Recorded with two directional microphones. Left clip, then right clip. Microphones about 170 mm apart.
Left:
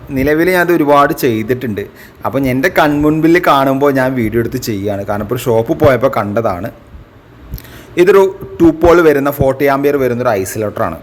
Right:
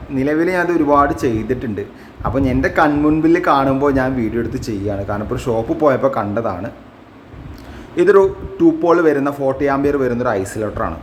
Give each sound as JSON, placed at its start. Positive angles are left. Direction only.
{"t": 0.1, "sound": "a man's voice", "side_deg": 25}
{"t": 7.9, "sound": "a man's voice", "side_deg": 25}